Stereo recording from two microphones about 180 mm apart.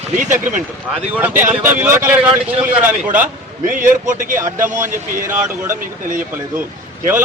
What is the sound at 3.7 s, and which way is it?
Speech, 45° right (ahead or behind).